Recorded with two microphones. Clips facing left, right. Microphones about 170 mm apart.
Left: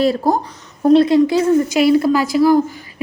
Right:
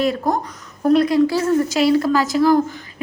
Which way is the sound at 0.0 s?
35° left (ahead or behind).